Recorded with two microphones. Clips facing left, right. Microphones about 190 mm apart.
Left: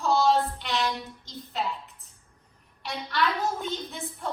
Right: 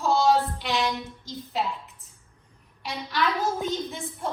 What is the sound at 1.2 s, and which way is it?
A woman's voice, centre (ahead or behind).